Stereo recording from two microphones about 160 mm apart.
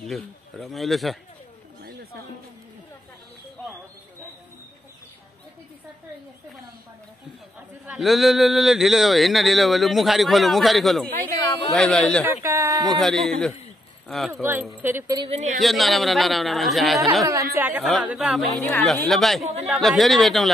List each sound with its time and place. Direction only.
0.0 s speech: centre (ahead or behind)
7.8 s speech: centre (ahead or behind)
11.3 s speech: 25° left (ahead or behind)
11.7 s speech: 5° left (ahead or behind)
12.4 s speech: 20° right (ahead or behind)
12.8 s speech: centre (ahead or behind)
14.4 s speech: 15° right (ahead or behind)
15.1 s speech: 40° right (ahead or behind)
15.6 s speech: centre (ahead or behind)
17.2 s speech: 20° right (ahead or behind); by 20.5 s centre (ahead or behind)